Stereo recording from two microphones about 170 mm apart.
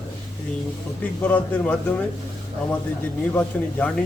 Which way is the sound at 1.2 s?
10° left (ahead or behind).